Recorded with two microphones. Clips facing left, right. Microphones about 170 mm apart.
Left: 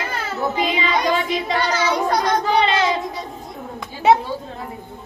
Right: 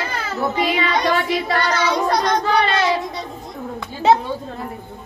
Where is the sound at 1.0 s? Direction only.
15° left (ahead or behind).